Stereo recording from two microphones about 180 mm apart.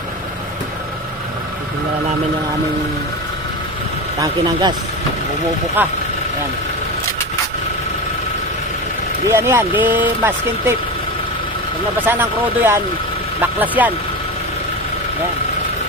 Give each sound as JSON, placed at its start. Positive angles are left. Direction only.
{"t": 4.2, "sound": "speech", "side_deg": -25}
{"t": 5.8, "sound": "speech", "side_deg": -10}
{"t": 9.3, "sound": "speech", "side_deg": -15}
{"t": 12.1, "sound": "speech", "side_deg": -10}